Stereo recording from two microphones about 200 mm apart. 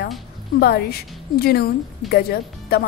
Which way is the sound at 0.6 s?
50° left (ahead or behind).